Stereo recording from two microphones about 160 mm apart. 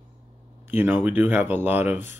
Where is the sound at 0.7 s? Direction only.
15° right (ahead or behind).